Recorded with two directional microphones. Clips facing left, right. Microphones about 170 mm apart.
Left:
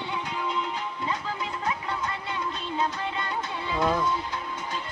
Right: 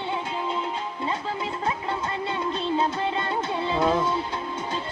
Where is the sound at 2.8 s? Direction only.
30° right (ahead or behind).